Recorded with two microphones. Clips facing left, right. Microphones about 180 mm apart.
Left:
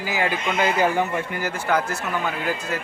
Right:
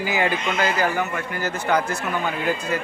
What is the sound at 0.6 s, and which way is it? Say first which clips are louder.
Speech: left 3 dB; 25° left (ahead or behind).